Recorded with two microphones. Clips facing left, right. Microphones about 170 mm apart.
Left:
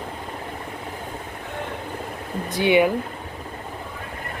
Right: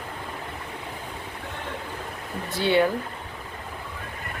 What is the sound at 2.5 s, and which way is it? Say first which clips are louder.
Speech: left 3 dB; 15° left (ahead or behind).